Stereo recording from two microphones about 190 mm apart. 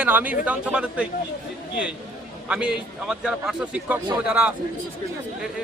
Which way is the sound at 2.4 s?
5° right (ahead or behind).